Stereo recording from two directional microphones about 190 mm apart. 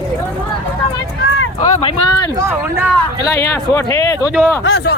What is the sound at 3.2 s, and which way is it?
Speech, 15° left (ahead or behind).